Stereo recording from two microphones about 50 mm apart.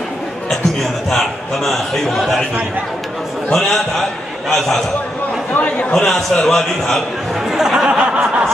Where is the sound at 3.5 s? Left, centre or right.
Centre.